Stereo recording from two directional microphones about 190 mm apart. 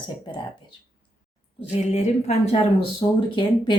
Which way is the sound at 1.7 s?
35° left (ahead or behind).